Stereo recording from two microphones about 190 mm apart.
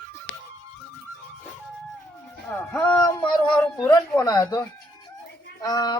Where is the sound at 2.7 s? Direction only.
10° left (ahead or behind).